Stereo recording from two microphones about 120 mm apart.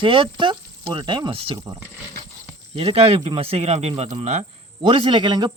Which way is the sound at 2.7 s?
55° right (ahead or behind).